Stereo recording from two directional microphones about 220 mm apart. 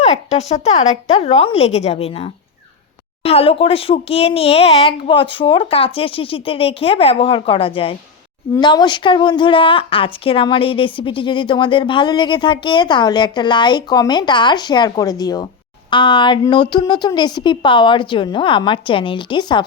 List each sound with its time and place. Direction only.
0.0 s a woman's voice: 30° left (ahead or behind)